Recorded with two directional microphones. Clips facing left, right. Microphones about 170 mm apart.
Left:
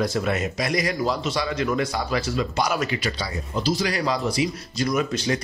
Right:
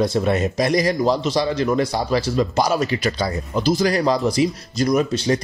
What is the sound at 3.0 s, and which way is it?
Speech, 50° right (ahead or behind).